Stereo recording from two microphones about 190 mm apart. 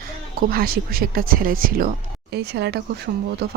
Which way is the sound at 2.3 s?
60° right (ahead or behind).